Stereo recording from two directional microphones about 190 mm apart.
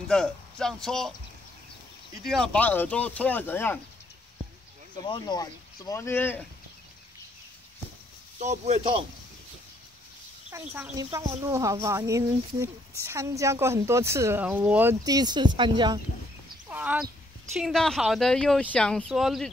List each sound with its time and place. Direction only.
0.1 s speech: 5° left (ahead or behind)
2.2 s speech: 5° left (ahead or behind)
5.0 s speech: 25° left (ahead or behind)
8.4 s speech: 35° right (ahead or behind)
10.5 s a woman's voice: 10° right (ahead or behind)
16.6 s a sound: 10° right (ahead or behind)
17.6 s speech: centre (ahead or behind)